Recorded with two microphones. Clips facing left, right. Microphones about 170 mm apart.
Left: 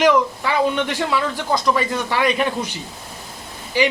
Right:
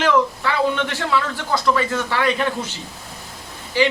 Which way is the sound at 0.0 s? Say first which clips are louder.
Left 2 dB; 15° left (ahead or behind).